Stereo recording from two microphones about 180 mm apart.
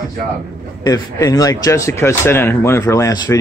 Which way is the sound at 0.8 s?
20° left (ahead or behind).